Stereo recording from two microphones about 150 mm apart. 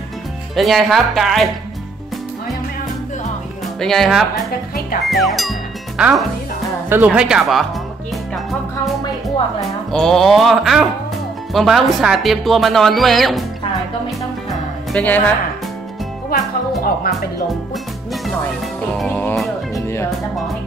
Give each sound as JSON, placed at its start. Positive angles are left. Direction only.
{"t": 0.6, "sound": "speech", "side_deg": 0}
{"t": 3.8, "sound": "speech", "side_deg": 0}
{"t": 9.9, "sound": "speech", "side_deg": 0}
{"t": 14.9, "sound": "speech", "side_deg": 10}
{"t": 16.3, "sound": "speech", "side_deg": 80}
{"t": 18.9, "sound": "music", "side_deg": 5}